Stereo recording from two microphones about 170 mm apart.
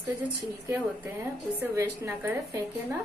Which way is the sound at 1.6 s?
15° right (ahead or behind).